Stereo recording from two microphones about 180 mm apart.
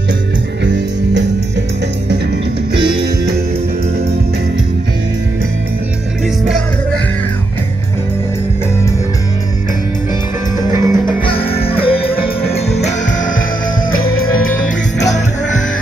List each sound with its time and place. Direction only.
0.7 s music: 75° right (ahead or behind)
10.7 s music: 15° right (ahead or behind)
11.6 s music: 30° left (ahead or behind)
15.0 s music: 40° left (ahead or behind)